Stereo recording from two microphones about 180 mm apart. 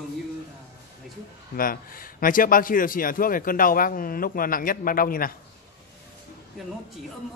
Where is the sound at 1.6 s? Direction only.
50° left (ahead or behind).